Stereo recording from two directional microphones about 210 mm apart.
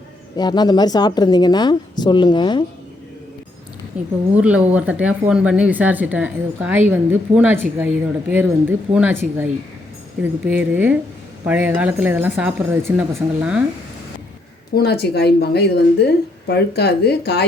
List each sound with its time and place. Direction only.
0.3 s speech: 20° left (ahead or behind)
3.9 s speech: 5° right (ahead or behind)
9.0 s speech: 10° right (ahead or behind)
14.8 s a woman's voice: 50° left (ahead or behind)